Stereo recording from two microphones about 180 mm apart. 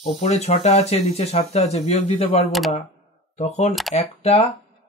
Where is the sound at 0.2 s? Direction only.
35° left (ahead or behind).